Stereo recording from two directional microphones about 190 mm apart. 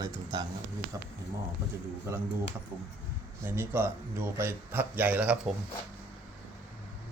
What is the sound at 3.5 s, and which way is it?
Speech, 10° right (ahead or behind).